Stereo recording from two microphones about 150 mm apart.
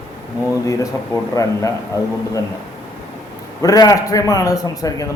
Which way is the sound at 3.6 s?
25° left (ahead or behind).